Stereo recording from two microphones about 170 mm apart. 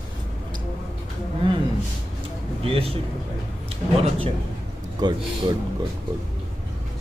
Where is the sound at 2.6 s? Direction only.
35° right (ahead or behind).